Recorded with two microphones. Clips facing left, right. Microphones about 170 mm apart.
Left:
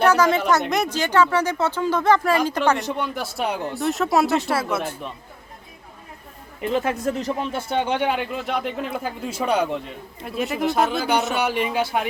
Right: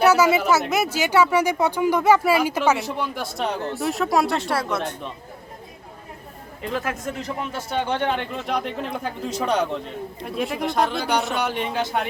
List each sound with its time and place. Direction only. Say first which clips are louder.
0.0 s speech: right 1 dB; 10° right (ahead or behind); by 3.8 s 10° left (ahead or behind)
3.8 s speech: left 2 dB; centre (ahead or behind)
6.6 s speech: left 5 dB; 25° left (ahead or behind)
7.8 s speech: left 1 dB; 15° left (ahead or behind)